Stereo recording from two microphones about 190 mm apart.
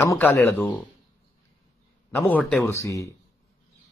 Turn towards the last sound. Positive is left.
turn(degrees=15)  # may be behind; listen again after turning